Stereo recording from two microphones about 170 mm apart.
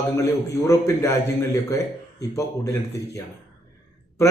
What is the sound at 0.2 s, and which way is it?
A man's voice, 15° left (ahead or behind).